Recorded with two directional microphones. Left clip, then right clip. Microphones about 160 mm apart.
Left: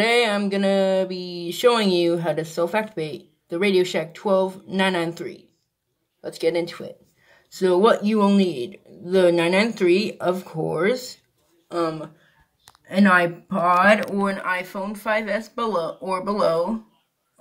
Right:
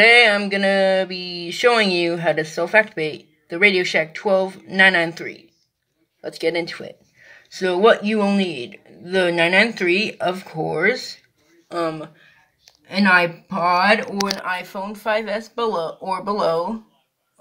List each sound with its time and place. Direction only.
0.0 s speech: centre (ahead or behind); by 16.7 s 20° right (ahead or behind)